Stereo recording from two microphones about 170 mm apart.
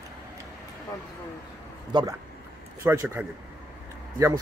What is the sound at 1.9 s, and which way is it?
Speech, 25° right (ahead or behind).